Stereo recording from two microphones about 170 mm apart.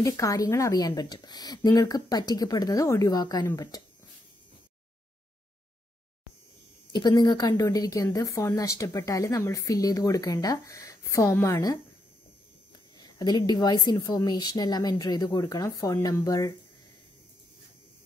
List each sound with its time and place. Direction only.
0.0 s speech: 20° left (ahead or behind)
6.9 s speech: 25° left (ahead or behind)
12.9 s speech: 25° left (ahead or behind)